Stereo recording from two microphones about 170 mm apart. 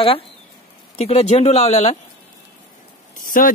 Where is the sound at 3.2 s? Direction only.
55° left (ahead or behind).